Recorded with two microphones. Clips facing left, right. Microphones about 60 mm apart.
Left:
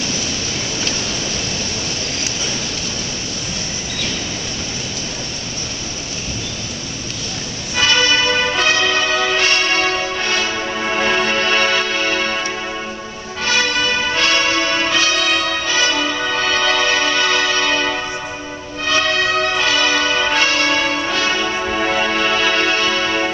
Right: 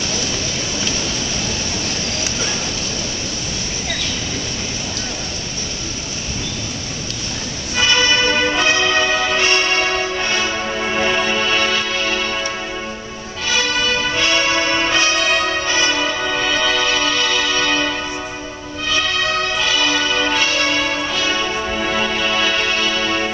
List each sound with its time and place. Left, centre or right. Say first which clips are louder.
7.7 s music: left 1 dB; centre
9.4 s change ringing: even; centre
10.2 s music: even; centre
10.7 s music: left 1 dB; centre
13.5 s music: left 1 dB; centre
14.9 s brass instrument: even; right
15.9 s music: even; centre
20.3 s church bell: left 2 dB; centre
21.1 s music: left 1 dB; centre